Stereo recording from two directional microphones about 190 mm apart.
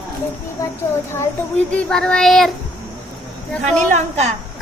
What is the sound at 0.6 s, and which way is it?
Speech, 15° left (ahead or behind).